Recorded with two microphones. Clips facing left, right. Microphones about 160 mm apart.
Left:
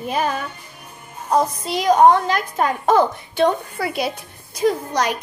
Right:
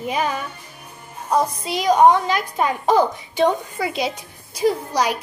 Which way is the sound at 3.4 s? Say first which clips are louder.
Even; 20° right (ahead or behind).